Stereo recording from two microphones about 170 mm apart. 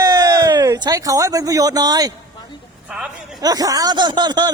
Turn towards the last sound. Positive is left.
turn(degrees=-25)  # may be behind; listen again after turning